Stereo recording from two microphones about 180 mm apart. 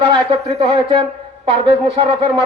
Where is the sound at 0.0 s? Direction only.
30° right (ahead or behind).